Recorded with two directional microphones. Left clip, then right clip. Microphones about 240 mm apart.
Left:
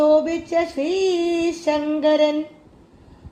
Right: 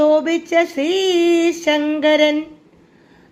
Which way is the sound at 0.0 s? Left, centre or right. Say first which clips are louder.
Right 2 dB; right.